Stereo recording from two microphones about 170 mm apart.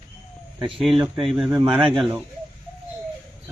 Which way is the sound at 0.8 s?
Centre (ahead or behind).